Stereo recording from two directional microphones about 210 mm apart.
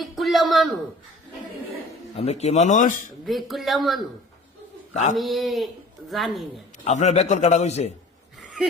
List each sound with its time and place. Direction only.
0.0 s a sound: centre (ahead or behind)
2.1 s a man's voice: 30° left (ahead or behind)
3.2 s speech: centre (ahead or behind)
5.1 s speech: centre (ahead or behind)
6.8 s a man's voice: 35° left (ahead or behind)